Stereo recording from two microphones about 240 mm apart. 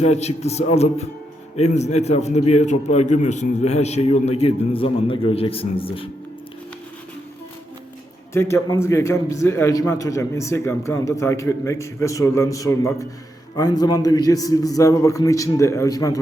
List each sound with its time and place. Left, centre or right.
0.0 s a man's voice: left
8.3 s a man's voice: centre